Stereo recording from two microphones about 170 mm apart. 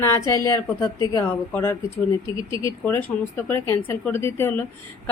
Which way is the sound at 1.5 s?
15° left (ahead or behind).